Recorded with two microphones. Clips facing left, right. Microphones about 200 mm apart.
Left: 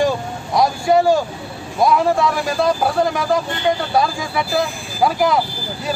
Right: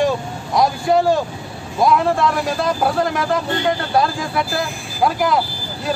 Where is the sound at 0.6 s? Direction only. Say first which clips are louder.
Left 1 dB; centre (ahead or behind).